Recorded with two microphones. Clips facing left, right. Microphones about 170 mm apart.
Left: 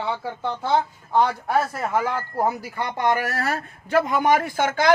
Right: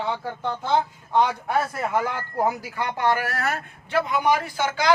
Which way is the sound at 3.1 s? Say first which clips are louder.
Left 2 dB; 25° left (ahead or behind).